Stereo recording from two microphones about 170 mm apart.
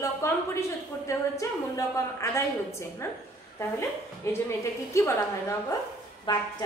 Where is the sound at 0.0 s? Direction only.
15° left (ahead or behind).